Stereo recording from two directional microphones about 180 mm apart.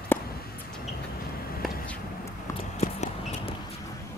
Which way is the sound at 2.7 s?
40° left (ahead or behind).